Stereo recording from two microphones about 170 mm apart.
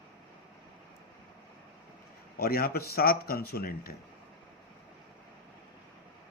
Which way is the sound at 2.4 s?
60° left (ahead or behind).